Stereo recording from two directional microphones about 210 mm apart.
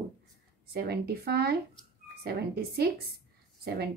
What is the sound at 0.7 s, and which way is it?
A woman's voice, 50° right (ahead or behind).